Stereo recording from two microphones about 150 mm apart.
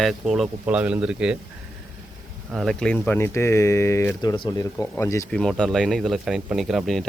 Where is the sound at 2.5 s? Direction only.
Centre (ahead or behind); by 5.2 s 20° left (ahead or behind).